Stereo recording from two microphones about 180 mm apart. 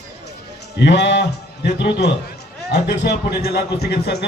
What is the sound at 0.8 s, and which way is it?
A man's voice, 75° left (ahead or behind).